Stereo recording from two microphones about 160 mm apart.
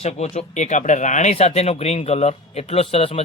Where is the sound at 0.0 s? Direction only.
45° left (ahead or behind).